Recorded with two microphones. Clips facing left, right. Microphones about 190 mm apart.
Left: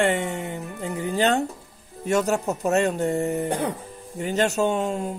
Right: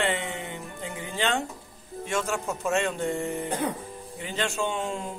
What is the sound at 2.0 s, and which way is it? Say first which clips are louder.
A man's voice: left 7 dB; 40° left (ahead or behind).